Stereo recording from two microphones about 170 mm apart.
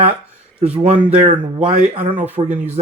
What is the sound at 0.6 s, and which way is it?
Speech, 10° right (ahead or behind).